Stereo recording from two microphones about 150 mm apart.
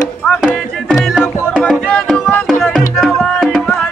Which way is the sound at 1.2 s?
15° left (ahead or behind).